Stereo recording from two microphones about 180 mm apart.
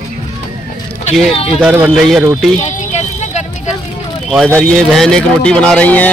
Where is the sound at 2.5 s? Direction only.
40° left (ahead or behind).